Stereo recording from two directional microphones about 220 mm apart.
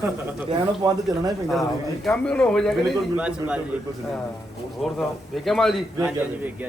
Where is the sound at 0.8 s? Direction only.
20° right (ahead or behind).